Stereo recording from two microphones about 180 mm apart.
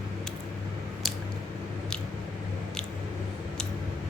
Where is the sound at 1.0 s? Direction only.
Centre (ahead or behind).